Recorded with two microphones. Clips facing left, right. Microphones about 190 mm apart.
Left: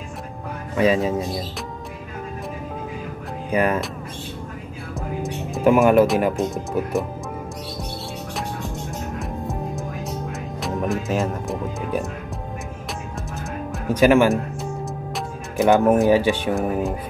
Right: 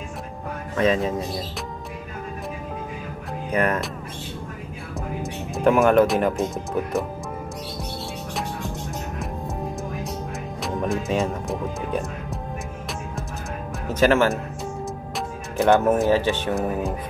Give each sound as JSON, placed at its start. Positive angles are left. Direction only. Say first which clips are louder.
{"t": 0.7, "sound": "speech", "louder": "left 2 dB", "side_deg": 10}
{"t": 3.5, "sound": "speech", "louder": "left 2 dB", "side_deg": 10}
{"t": 4.9, "sound": "speech", "louder": "left 2 dB", "side_deg": 0}
{"t": 10.6, "sound": "speech", "louder": "left 1 dB", "side_deg": 0}
{"t": 13.9, "sound": "speech", "louder": "left 3 dB", "side_deg": 15}
{"t": 15.6, "sound": "speech", "louder": "left 2 dB", "side_deg": 0}